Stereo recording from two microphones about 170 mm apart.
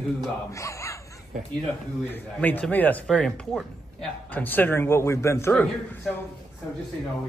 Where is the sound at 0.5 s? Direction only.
20° left (ahead or behind).